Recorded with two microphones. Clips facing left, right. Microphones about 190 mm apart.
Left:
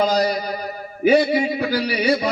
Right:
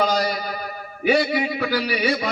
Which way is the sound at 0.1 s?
40° left (ahead or behind).